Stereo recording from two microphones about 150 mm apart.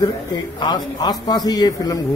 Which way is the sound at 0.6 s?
30° left (ahead or behind).